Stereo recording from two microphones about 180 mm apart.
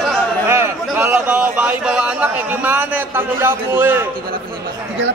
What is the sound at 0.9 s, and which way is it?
A man's voice, 10° right (ahead or behind).